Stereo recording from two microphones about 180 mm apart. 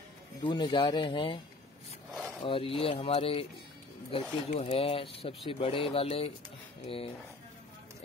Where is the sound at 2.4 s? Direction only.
30° left (ahead or behind).